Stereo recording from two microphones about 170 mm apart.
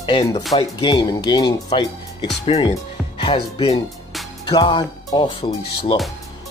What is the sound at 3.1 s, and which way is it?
Music, 30° left (ahead or behind).